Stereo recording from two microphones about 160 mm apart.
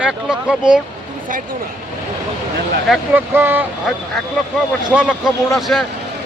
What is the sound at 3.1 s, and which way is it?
A man's voice, 10° right (ahead or behind).